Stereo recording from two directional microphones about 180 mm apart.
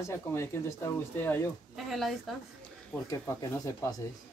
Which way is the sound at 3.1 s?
20° left (ahead or behind).